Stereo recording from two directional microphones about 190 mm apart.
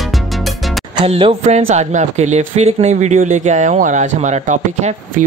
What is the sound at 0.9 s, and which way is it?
Speech, 30° right (ahead or behind).